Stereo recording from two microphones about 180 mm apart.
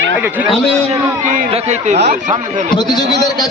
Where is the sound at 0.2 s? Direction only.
10° right (ahead or behind).